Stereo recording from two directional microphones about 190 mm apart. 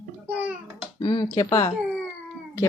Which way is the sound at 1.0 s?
25° left (ahead or behind).